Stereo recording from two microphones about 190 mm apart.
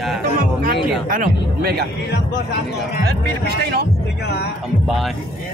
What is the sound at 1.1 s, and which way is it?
Speech, 50° right (ahead or behind).